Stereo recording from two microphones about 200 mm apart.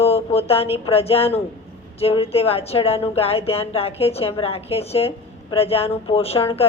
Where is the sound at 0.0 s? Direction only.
30° left (ahead or behind).